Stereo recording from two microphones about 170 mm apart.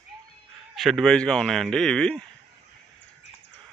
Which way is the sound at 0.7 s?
Centre (ahead or behind).